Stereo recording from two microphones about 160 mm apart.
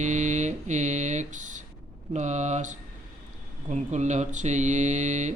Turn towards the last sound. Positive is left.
turn(degrees=-50)  # may be behind; listen again after turning